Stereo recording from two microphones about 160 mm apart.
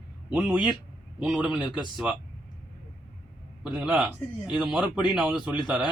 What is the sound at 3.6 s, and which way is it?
A man's voice, 5° right (ahead or behind).